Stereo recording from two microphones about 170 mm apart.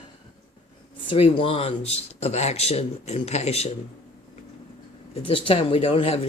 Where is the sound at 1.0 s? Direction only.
35° left (ahead or behind).